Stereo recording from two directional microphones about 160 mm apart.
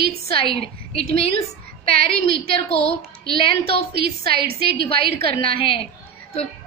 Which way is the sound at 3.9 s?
75° right (ahead or behind).